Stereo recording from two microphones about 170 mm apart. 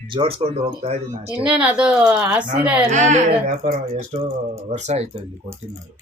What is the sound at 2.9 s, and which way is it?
Speech, 45° right (ahead or behind).